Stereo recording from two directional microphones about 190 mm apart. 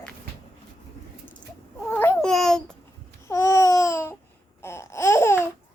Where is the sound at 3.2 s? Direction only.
15° left (ahead or behind).